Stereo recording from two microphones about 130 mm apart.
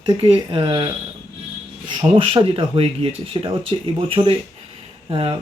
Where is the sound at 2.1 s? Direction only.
45° right (ahead or behind).